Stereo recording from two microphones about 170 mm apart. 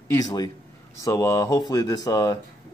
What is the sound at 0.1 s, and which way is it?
Speech, 20° left (ahead or behind).